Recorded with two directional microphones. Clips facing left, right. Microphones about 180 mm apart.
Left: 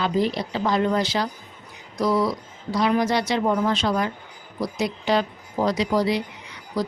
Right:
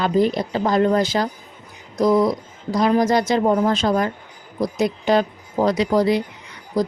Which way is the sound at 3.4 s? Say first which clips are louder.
Right 4 dB; 35° right (ahead or behind).